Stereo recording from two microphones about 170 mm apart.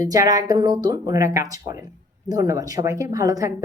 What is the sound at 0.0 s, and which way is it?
A woman's voice, 20° right (ahead or behind).